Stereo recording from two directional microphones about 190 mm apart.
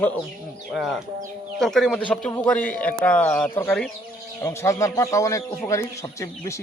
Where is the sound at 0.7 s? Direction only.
Centre (ahead or behind).